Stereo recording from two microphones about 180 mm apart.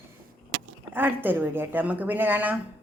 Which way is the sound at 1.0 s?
10° right (ahead or behind).